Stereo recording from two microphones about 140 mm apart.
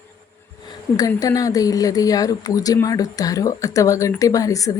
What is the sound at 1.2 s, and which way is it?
Speech, 25° left (ahead or behind).